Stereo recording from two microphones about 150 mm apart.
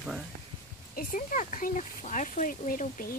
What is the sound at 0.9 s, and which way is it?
Speech, 65° left (ahead or behind).